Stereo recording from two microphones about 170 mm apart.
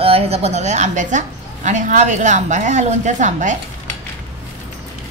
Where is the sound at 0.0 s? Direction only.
35° right (ahead or behind).